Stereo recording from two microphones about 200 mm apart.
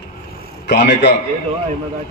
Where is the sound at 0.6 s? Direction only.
55° left (ahead or behind).